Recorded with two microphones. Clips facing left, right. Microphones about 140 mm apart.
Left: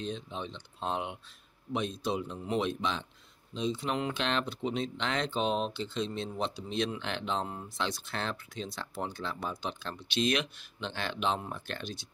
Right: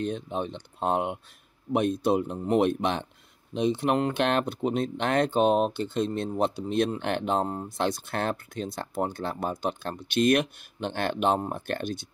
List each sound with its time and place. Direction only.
0.0 s speech: 55° right (ahead or behind)